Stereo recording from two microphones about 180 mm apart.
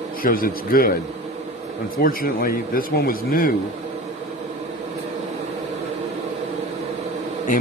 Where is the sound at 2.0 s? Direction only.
55° left (ahead or behind).